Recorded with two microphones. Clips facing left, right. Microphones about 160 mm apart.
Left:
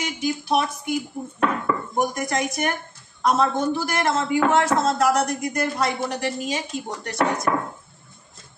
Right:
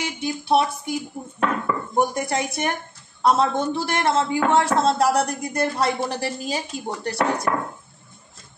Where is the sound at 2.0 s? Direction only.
30° right (ahead or behind).